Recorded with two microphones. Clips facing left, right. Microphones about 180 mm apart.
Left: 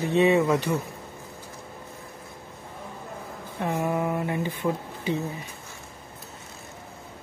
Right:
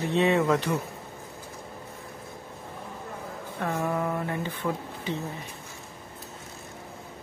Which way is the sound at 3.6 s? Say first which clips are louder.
Left 2 dB; 15° left (ahead or behind).